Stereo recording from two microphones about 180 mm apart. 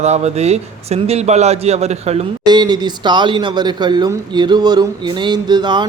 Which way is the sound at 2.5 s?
25° right (ahead or behind).